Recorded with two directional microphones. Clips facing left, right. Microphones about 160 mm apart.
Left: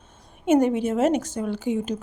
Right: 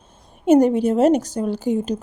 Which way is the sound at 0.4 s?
35° right (ahead or behind).